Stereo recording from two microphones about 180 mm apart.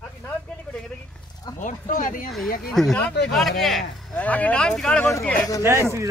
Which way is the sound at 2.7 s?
5° left (ahead or behind).